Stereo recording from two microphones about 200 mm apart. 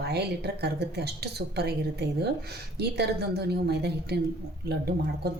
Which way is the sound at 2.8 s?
55° right (ahead or behind).